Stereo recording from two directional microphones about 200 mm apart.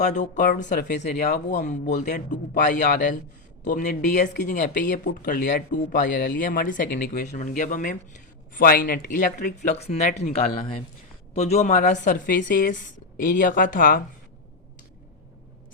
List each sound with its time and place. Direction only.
0.0 s speech: 35° left (ahead or behind)
0.9 s speech: 60° left (ahead or behind)
1.5 s speech: 40° left (ahead or behind)